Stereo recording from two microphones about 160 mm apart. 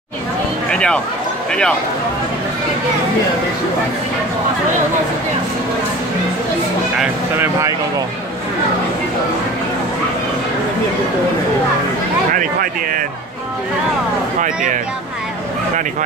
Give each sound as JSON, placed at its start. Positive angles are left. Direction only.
{"t": 0.7, "sound": "speech", "side_deg": 5}
{"t": 12.4, "sound": "speech", "side_deg": -60}
{"t": 14.4, "sound": "speech", "side_deg": -55}